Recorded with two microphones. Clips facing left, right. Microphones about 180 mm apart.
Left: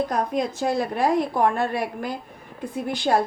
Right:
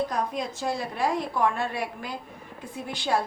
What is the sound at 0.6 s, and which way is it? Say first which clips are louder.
A woman's voice: left 4 dB; 50° left (ahead or behind).